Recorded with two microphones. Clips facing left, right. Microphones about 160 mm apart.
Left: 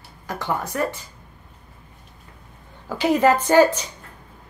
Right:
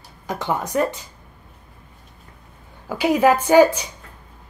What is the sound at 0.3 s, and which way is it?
Speech, 20° right (ahead or behind).